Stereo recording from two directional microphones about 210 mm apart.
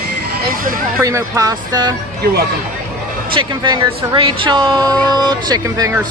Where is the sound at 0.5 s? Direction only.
40° right (ahead or behind).